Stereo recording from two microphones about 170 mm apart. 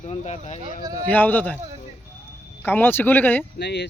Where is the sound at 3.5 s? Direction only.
85° left.